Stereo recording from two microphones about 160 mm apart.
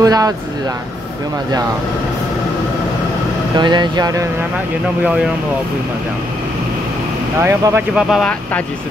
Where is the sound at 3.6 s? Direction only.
25° right (ahead or behind).